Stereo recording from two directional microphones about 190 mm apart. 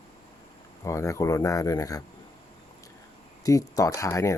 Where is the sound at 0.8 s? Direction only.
15° left (ahead or behind).